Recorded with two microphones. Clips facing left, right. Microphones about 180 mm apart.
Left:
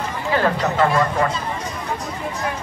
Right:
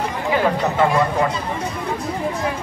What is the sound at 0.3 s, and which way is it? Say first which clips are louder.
Speech: even; 15° right (ahead or behind).